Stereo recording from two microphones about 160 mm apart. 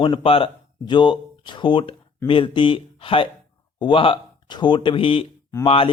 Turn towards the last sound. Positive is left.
turn(degrees=35)  # may be behind; listen again after turning